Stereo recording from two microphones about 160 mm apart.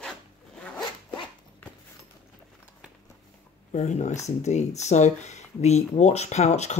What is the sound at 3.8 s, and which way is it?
Speech, 45° left (ahead or behind).